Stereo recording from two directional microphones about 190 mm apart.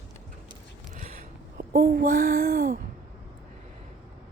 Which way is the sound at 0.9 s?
40° right (ahead or behind).